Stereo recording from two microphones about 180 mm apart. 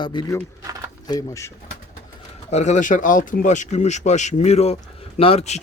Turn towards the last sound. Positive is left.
turn(degrees=35)  # may be behind; listen again after turning